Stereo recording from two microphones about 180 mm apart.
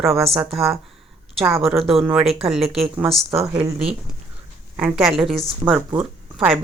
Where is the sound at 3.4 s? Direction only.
20° right (ahead or behind).